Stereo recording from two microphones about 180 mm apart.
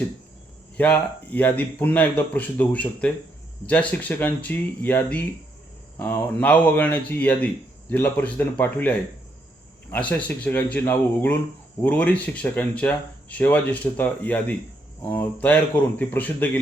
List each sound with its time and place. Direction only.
0.8 s speech: 10° left (ahead or behind)